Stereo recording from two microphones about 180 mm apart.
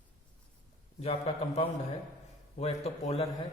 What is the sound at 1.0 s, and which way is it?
A man's voice, 35° left (ahead or behind).